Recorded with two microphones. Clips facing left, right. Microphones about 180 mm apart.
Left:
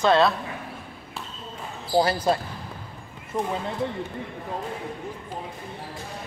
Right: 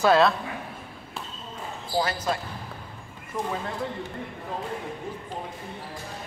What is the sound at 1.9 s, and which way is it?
Speech, 30° left (ahead or behind).